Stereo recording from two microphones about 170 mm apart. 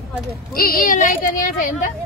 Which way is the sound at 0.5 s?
60° left (ahead or behind).